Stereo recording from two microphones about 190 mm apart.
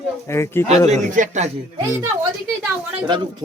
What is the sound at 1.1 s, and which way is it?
Speech, 40° right (ahead or behind).